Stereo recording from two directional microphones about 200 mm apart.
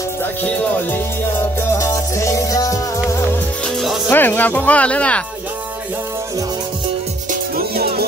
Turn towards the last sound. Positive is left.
turn(degrees=-50)  # may be behind; listen again after turning